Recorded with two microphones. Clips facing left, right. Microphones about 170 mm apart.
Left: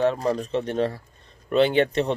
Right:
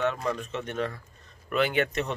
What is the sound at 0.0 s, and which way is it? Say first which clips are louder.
Speech: left 6 dB; 35° left (ahead or behind).